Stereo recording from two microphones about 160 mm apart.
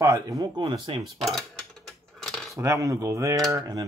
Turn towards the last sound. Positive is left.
turn(degrees=-20)  # may be behind; listen again after turning